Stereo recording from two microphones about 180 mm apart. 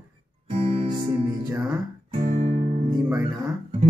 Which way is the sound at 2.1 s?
40° right (ahead or behind).